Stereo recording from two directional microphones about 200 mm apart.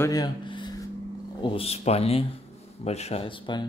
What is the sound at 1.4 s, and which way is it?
Speech, 30° left (ahead or behind).